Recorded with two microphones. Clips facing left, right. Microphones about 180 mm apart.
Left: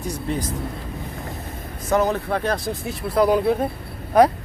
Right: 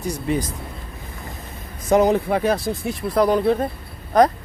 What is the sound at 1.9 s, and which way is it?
Speech, 15° right (ahead or behind).